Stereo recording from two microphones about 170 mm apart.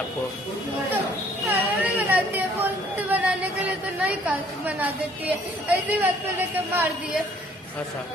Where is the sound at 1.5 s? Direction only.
10° right (ahead or behind).